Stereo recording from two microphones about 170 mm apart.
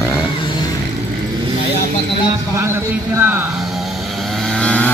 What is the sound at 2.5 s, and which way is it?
Speech, 15° right (ahead or behind).